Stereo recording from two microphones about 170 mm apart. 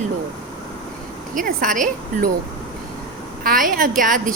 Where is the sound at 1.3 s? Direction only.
50° right (ahead or behind).